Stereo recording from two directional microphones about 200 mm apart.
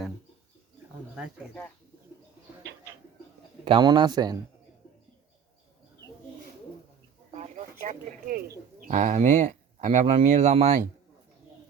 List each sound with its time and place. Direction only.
3.6 s speech: 25° right (ahead or behind)
7.3 s bird: 35° right (ahead or behind)
8.9 s speech: 35° right (ahead or behind)